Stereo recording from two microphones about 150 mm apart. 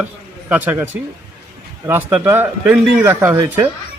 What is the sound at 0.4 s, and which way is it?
Speech, 10° right (ahead or behind).